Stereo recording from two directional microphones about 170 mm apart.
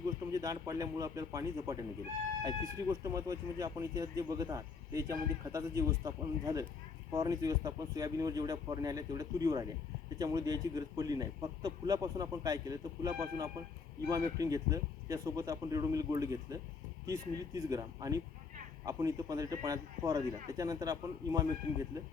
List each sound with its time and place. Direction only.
0.0 s speech: 20° right (ahead or behind)